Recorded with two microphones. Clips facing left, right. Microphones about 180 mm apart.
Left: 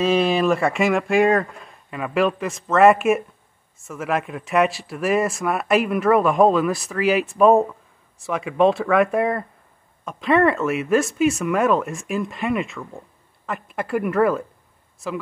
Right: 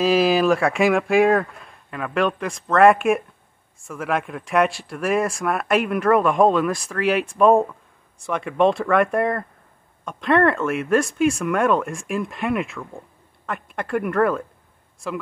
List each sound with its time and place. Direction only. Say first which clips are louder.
0.0 s speech: right 1 dB; centre (ahead or behind)